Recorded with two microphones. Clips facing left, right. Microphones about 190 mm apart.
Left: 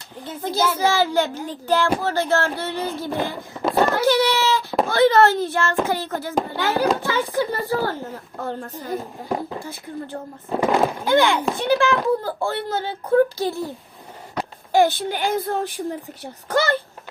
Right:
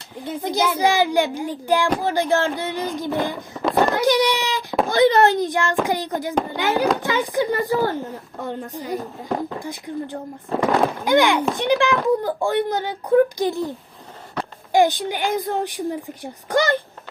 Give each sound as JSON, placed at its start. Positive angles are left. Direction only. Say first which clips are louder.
{"t": 0.3, "sound": "a child's voice", "louder": "right 1 dB", "side_deg": -15}
{"t": 3.2, "sound": "a sound", "louder": "right 1 dB", "side_deg": -15}
{"t": 4.9, "sound": "a child's voice", "louder": "even", "side_deg": -15}
{"t": 9.0, "sound": "speech", "louder": "right 1 dB", "side_deg": 10}
{"t": 9.6, "sound": "a child's voice", "louder": "right 3 dB", "side_deg": -15}
{"t": 10.5, "sound": "speech", "louder": "even", "side_deg": 0}
{"t": 11.0, "sound": "a child's voice", "louder": "right 1 dB", "side_deg": -15}